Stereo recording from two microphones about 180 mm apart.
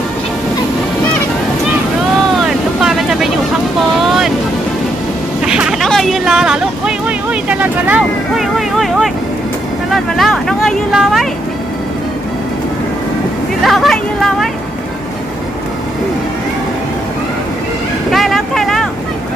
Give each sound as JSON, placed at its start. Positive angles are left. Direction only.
{"t": 2.5, "sound": "vehicle", "side_deg": -5}
{"t": 4.0, "sound": "ocean", "side_deg": 0}
{"t": 5.5, "sound": "a sound", "side_deg": -5}
{"t": 9.9, "sound": "vehicle", "side_deg": 0}
{"t": 13.7, "sound": "a sound", "side_deg": 0}
{"t": 18.1, "sound": "vehicle", "side_deg": 0}